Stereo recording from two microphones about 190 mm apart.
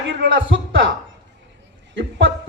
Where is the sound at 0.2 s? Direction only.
75° right (ahead or behind).